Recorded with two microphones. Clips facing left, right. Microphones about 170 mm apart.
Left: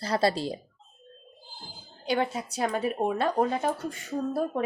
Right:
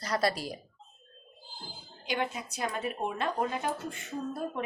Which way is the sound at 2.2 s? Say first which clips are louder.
Left 3 dB; 35° left (ahead or behind).